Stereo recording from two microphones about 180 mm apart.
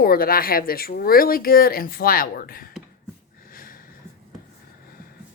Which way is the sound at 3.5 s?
50° left (ahead or behind).